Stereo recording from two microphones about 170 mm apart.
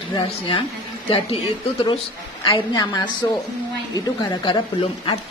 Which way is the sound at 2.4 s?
30° left (ahead or behind).